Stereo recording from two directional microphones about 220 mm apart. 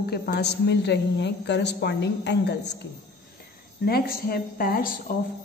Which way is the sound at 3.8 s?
45° left (ahead or behind).